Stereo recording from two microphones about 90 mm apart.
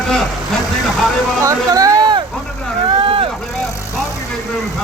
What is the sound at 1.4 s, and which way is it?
Speech, 40° right (ahead or behind).